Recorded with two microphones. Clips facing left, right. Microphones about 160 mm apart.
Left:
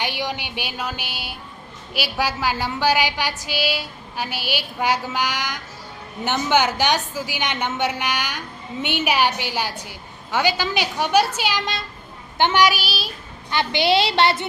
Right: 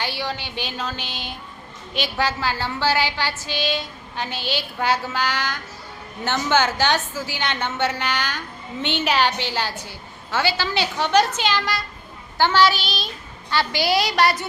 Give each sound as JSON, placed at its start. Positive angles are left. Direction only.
{"t": 0.0, "sound": "a woman's voice", "side_deg": 15}
{"t": 13.5, "sound": "a woman's voice", "side_deg": 20}